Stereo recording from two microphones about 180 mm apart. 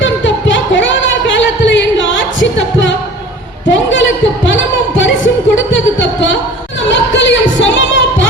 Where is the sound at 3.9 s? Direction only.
90° left.